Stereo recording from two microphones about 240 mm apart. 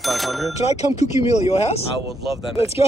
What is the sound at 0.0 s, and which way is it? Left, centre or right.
Speech, centre.